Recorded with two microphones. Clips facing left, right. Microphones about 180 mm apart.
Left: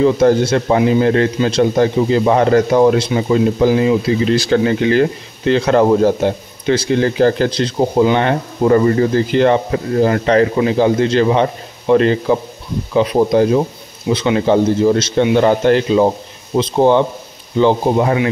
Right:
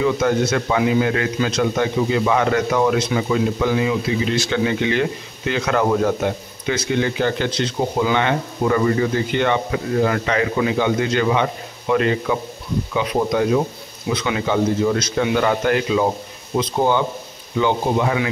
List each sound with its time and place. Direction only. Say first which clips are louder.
0.0 s a man's voice: left 6 dB; 35° left (ahead or behind)